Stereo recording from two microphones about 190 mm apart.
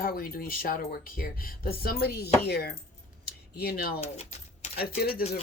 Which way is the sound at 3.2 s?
55° left (ahead or behind).